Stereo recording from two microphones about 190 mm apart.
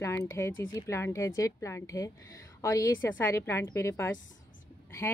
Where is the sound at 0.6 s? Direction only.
15° left (ahead or behind).